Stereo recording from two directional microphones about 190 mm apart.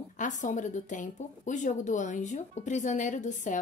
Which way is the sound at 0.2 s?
40° left (ahead or behind).